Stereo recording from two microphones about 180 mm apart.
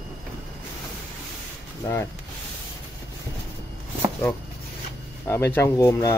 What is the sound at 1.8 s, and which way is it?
Speech, 15° left (ahead or behind).